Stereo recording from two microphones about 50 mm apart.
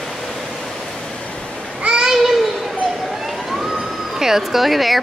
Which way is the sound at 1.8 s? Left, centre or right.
Centre.